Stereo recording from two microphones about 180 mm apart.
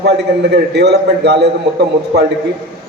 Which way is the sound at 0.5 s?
65° right (ahead or behind).